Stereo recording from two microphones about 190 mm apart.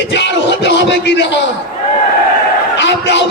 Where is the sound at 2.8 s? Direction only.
65° left (ahead or behind).